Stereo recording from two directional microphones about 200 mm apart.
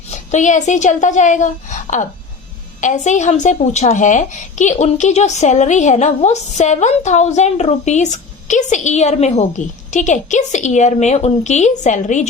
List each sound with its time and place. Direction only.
0.1 s a woman's voice: 35° left (ahead or behind)